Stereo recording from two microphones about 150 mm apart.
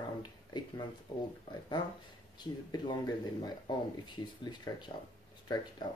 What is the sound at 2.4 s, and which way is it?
Speech, 30° left (ahead or behind).